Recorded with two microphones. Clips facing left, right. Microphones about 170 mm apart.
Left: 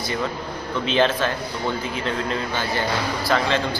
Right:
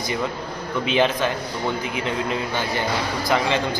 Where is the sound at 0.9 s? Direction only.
15° right (ahead or behind).